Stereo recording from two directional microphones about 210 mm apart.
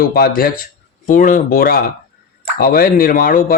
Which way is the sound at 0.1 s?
45° left (ahead or behind).